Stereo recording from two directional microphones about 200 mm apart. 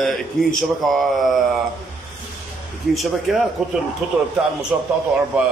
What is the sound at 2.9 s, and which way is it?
A man's voice, centre (ahead or behind).